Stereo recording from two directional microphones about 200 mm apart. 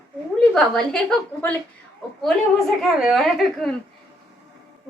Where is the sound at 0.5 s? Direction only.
5° left (ahead or behind).